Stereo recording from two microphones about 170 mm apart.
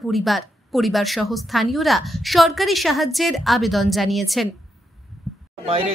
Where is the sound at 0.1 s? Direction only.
Centre (ahead or behind).